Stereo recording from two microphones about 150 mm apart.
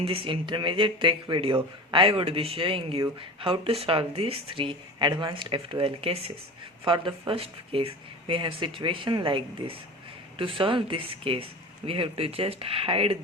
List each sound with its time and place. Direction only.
0.0 s speech: 40° right (ahead or behind)